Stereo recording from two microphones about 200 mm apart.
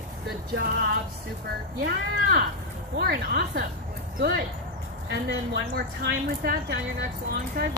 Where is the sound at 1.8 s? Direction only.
55° right (ahead or behind).